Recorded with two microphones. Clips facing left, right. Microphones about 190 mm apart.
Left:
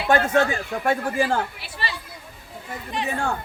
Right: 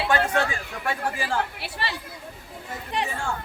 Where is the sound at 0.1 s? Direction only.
45° left (ahead or behind).